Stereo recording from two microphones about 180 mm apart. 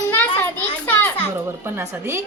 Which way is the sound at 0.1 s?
10° left (ahead or behind).